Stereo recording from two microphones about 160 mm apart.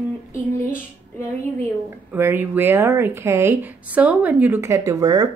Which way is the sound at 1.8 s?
15° right (ahead or behind).